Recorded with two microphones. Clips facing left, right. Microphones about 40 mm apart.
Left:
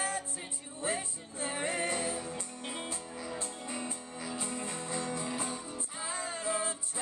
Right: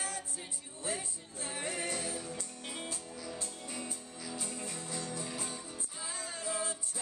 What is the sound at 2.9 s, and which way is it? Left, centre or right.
Music, left.